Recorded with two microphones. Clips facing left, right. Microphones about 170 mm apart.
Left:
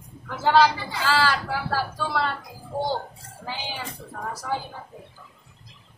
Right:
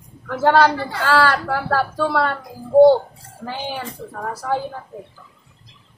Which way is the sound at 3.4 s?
60° right (ahead or behind).